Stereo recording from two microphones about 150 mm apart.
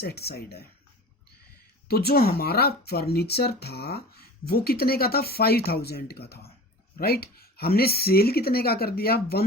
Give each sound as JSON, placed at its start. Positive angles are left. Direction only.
{"t": 0.0, "sound": "speech", "side_deg": 90}
{"t": 1.9, "sound": "speech", "side_deg": 90}